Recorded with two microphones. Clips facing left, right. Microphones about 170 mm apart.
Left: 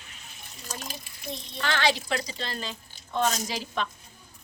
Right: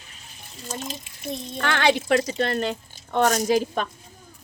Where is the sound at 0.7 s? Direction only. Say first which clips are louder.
Right 6 dB; 25° right (ahead or behind).